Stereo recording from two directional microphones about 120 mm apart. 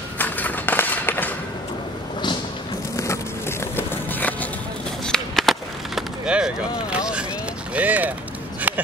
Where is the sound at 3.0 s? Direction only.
20° left (ahead or behind).